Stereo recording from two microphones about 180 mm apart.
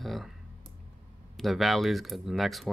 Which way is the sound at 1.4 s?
Centre (ahead or behind).